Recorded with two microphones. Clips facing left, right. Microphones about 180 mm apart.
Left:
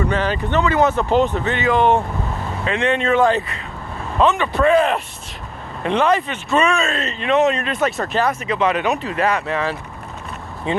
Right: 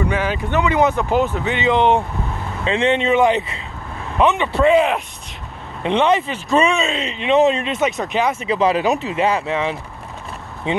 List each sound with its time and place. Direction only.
0.0 s speech: 10° right (ahead or behind)
5.9 s speech: 25° right (ahead or behind)
6.9 s speech: 15° right (ahead or behind)
7.3 s speech: 30° right (ahead or behind)
8.4 s speech: 30° right (ahead or behind)